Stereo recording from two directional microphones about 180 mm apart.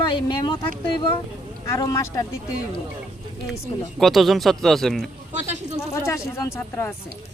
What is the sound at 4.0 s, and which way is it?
Speech, centre (ahead or behind).